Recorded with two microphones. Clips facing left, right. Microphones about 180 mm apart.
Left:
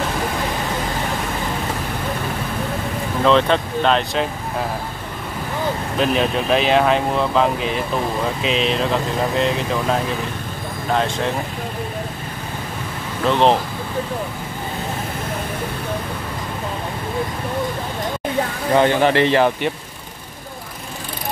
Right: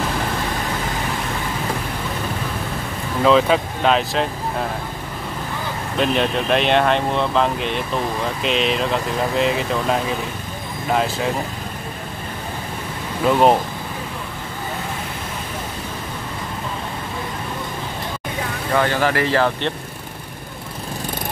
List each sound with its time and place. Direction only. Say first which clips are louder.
3.3 s speech: right 1 dB; 5° right (ahead or behind)
5.9 s speech: even; centre (ahead or behind)
13.2 s speech: right 1 dB; 5° right (ahead or behind)
18.8 s speech: left 4 dB; 20° left (ahead or behind)